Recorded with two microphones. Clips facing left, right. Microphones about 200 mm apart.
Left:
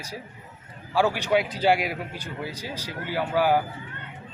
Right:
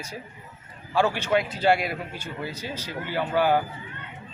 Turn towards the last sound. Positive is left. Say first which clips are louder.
# even
turn(degrees=10)  # may be behind; listen again after turning